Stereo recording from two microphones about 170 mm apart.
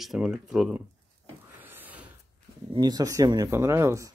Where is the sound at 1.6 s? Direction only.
10° right (ahead or behind).